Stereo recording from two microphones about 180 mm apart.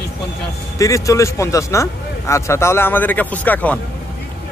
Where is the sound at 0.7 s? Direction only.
20° left (ahead or behind).